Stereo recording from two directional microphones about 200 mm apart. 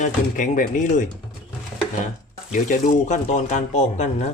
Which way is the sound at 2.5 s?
40° left (ahead or behind).